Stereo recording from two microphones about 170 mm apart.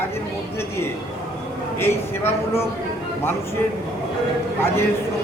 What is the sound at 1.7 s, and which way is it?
Speech, 15° left (ahead or behind).